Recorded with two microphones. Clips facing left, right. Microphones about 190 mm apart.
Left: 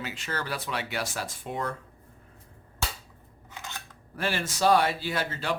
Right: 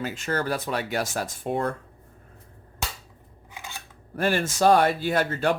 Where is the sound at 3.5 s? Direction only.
10° right (ahead or behind).